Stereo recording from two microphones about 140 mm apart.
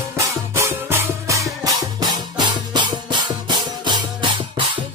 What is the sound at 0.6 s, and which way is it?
Music, 20° right (ahead or behind).